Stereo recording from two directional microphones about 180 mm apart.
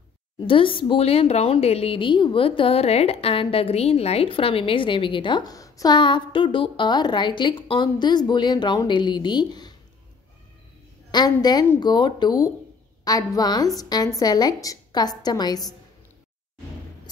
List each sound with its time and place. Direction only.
0.5 s a woman's voice: 30° left (ahead or behind)
11.1 s a woman's voice: 25° left (ahead or behind)